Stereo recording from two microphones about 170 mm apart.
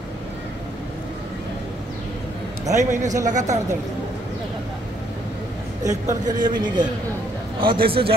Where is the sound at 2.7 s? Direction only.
45° right (ahead or behind).